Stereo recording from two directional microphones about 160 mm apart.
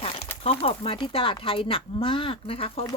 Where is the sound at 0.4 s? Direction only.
40° left (ahead or behind).